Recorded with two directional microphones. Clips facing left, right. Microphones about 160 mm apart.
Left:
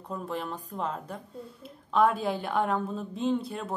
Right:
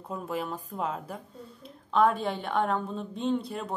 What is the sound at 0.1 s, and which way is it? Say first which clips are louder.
A woman's voice: right 1 dB; 5° right (ahead or behind).